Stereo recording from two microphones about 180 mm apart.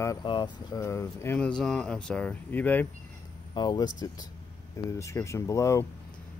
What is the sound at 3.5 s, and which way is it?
Speech, 25° left (ahead or behind).